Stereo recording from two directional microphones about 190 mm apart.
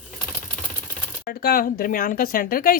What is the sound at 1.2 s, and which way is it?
Speech, 50° left (ahead or behind).